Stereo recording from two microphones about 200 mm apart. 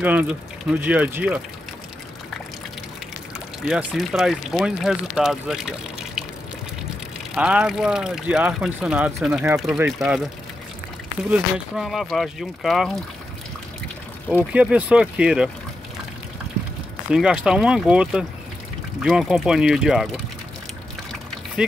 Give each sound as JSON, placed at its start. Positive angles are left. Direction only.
{"t": 0.0, "sound": "speech", "side_deg": -10}
{"t": 3.6, "sound": "speech", "side_deg": 0}
{"t": 7.3, "sound": "speech", "side_deg": -5}
{"t": 11.2, "sound": "speech", "side_deg": -5}
{"t": 14.3, "sound": "speech", "side_deg": -5}
{"t": 17.1, "sound": "speech", "side_deg": -5}
{"t": 21.6, "sound": "speech", "side_deg": -5}